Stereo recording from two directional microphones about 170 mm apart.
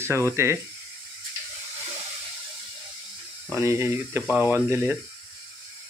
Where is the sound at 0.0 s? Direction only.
15° right (ahead or behind).